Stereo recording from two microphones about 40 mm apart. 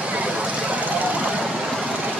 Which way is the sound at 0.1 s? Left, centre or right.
Right.